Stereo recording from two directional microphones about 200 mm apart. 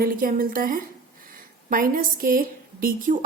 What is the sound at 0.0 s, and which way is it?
A woman's voice, 45° right (ahead or behind).